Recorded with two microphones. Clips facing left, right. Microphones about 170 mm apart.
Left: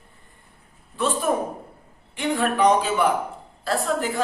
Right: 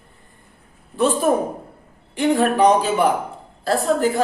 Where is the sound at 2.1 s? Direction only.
40° right (ahead or behind).